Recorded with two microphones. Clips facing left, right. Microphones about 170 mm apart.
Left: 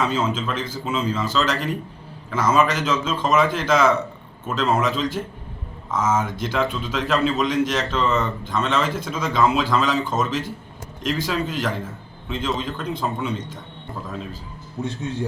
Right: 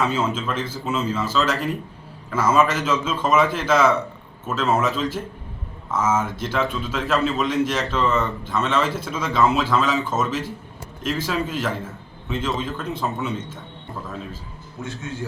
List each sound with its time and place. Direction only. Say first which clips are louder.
0.0 s a man's voice: even; 5° right (ahead or behind)
14.8 s a man's voice: left 5 dB; 35° left (ahead or behind)